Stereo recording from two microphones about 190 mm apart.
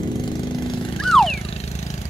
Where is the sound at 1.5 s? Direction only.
35° left (ahead or behind).